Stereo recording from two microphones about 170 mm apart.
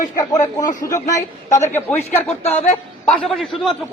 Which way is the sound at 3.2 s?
Centre (ahead or behind).